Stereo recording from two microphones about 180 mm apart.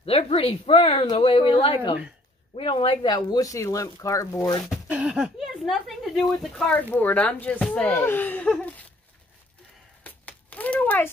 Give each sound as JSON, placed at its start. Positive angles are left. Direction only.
{"t": 0.0, "sound": "speech", "side_deg": 35}
{"t": 4.6, "sound": "speech", "side_deg": -5}
{"t": 10.0, "sound": "a sound", "side_deg": 10}